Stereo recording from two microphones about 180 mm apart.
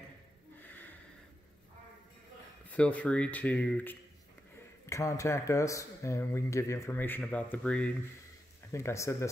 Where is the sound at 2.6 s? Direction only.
5° left (ahead or behind).